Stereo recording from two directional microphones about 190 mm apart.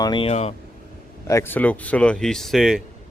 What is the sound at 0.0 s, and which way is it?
Speech, 25° left (ahead or behind).